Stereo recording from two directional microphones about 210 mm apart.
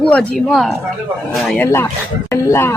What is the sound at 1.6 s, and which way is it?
Speech, 10° left (ahead or behind).